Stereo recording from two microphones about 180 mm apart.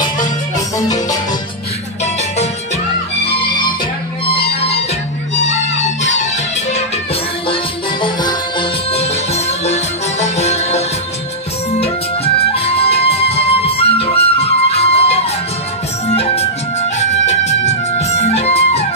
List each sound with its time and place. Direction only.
0.7 s music: 20° left (ahead or behind)
4.3 s music: 30° left (ahead or behind)
8.0 s music: 25° left (ahead or behind)
12.4 s music: 35° left (ahead or behind)
17.0 s music: 40° left (ahead or behind)